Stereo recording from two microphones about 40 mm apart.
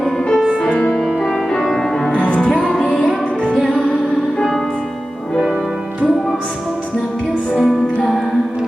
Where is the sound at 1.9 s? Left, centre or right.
Centre.